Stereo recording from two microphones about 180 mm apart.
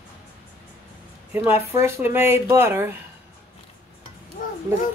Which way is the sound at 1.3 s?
10° right (ahead or behind).